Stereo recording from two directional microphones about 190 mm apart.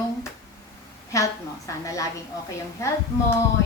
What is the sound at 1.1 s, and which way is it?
Speech, 15° left (ahead or behind).